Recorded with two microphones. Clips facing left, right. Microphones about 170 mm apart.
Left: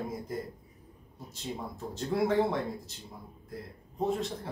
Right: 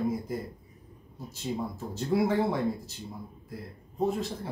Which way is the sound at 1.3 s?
5° right (ahead or behind).